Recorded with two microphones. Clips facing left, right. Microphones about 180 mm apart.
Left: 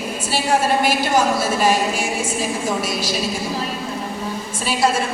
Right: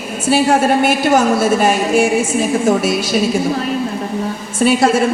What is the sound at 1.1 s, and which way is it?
Speech, 60° right (ahead or behind).